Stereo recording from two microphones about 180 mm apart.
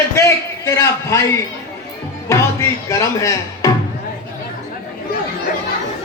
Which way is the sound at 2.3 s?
15° left (ahead or behind).